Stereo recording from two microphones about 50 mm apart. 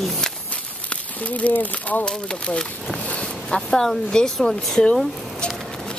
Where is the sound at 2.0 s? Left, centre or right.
Centre.